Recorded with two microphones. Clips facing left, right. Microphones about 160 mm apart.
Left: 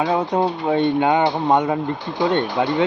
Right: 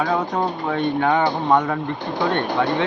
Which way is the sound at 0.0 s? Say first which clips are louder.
Left 2 dB; 25° left (ahead or behind).